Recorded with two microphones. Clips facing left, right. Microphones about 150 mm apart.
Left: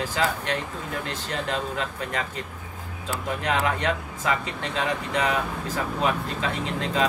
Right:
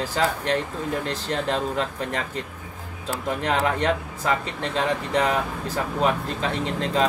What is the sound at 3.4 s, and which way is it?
Speech, 35° right (ahead or behind).